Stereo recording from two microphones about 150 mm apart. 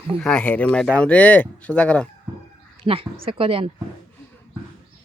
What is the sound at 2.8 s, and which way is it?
Speech, 35° right (ahead or behind).